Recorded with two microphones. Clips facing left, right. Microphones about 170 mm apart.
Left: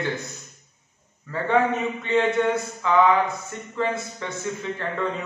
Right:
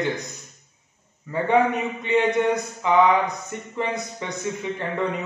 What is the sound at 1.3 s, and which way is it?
Speech, 15° right (ahead or behind).